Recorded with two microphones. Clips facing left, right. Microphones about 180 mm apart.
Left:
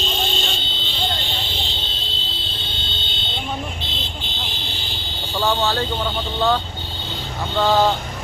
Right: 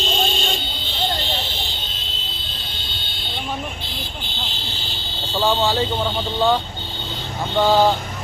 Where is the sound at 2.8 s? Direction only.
20° left (ahead or behind).